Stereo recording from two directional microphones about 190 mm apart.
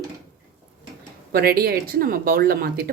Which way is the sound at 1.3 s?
55° right (ahead or behind).